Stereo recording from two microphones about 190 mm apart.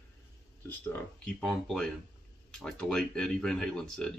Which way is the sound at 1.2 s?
5° left (ahead or behind).